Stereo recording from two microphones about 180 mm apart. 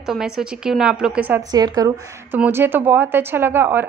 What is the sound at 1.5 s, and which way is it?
A woman's voice, 20° right (ahead or behind).